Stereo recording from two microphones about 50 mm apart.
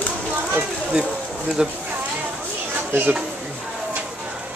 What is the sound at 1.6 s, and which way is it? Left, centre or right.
Speech, centre.